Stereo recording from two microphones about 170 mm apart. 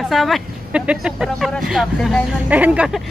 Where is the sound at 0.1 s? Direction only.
Centre (ahead or behind).